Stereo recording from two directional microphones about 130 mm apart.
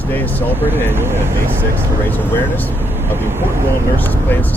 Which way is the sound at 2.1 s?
15° left (ahead or behind).